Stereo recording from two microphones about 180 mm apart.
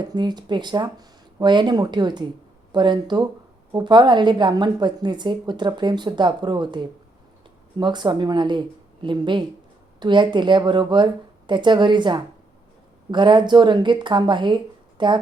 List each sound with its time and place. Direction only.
0.0 s a woman's voice: 25° right (ahead or behind)